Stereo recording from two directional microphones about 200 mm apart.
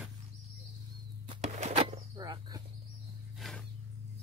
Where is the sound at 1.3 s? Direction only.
30° right (ahead or behind).